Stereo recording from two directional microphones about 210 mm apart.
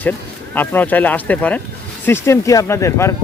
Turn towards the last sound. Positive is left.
turn(degrees=15)  # may be behind; listen again after turning